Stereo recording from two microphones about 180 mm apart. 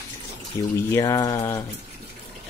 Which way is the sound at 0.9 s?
20° left (ahead or behind).